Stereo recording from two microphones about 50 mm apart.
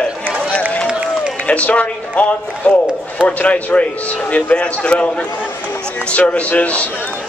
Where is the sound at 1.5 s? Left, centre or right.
Left.